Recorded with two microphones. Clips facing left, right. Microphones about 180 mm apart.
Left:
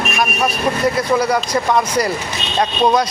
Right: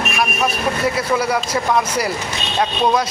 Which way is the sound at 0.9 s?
5° right (ahead or behind).